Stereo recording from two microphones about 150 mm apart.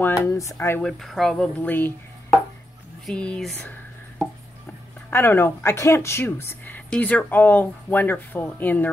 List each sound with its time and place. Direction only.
0.0 s speech: 15° left (ahead or behind)
0.8 s speech: centre (ahead or behind)
3.1 s speech: 5° left (ahead or behind)
5.1 s speech: 15° left (ahead or behind)